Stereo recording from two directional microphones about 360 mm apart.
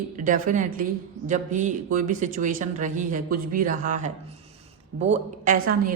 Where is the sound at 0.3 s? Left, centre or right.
Right.